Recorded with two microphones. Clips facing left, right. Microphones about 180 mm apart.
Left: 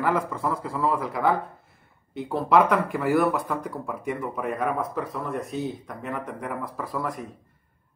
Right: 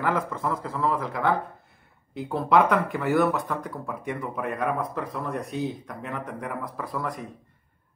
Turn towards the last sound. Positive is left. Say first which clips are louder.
# left 1 dB
turn(degrees=5)  # may be behind; listen again after turning